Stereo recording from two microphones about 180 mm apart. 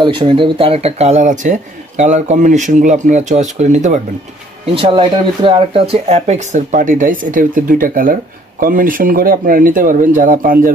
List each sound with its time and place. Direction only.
0.0 s speech: 25° right (ahead or behind); by 4.0 s 40° right (ahead or behind)
4.7 s speech: 25° right (ahead or behind); by 10.7 s 50° right (ahead or behind)